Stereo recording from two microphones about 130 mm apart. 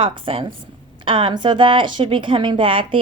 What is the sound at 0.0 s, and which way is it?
A woman's voice, 40° right (ahead or behind).